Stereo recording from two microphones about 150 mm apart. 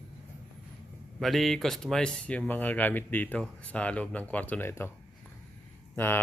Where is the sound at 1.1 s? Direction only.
Centre (ahead or behind).